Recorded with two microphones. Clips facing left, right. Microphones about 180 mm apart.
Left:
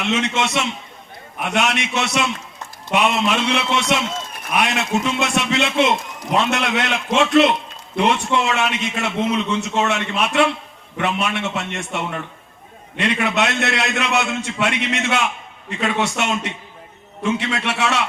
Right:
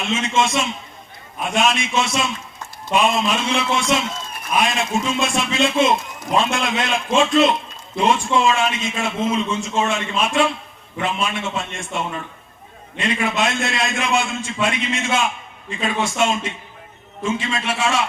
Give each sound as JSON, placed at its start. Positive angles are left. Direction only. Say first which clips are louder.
{"t": 0.0, "sound": "a man's voice", "louder": "even", "side_deg": 70}